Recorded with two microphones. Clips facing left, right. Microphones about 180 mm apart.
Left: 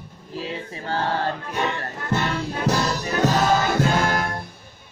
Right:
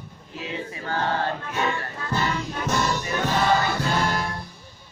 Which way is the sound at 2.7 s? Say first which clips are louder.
Left 2 dB; 40° left (ahead or behind).